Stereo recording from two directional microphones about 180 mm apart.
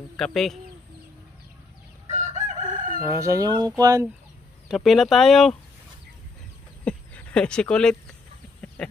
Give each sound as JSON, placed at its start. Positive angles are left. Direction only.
{"t": 0.2, "sound": "speech", "side_deg": 0}
{"t": 2.0, "sound": "chicken", "side_deg": -40}
{"t": 3.0, "sound": "speech", "side_deg": -15}
{"t": 4.6, "sound": "speech", "side_deg": 0}
{"t": 6.8, "sound": "a sound", "side_deg": 5}